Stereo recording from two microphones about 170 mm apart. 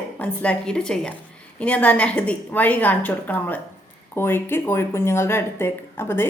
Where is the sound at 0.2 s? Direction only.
5° left (ahead or behind).